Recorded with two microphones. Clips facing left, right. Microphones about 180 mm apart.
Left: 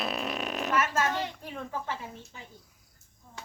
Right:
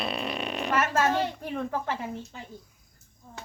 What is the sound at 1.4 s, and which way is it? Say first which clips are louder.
Speech: right 6 dB; 65° right (ahead or behind).